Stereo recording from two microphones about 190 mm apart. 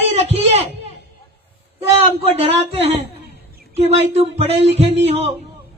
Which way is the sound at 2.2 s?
30° right (ahead or behind).